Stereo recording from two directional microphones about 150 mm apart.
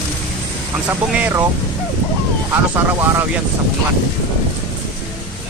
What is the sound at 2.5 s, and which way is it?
Speech, 15° right (ahead or behind).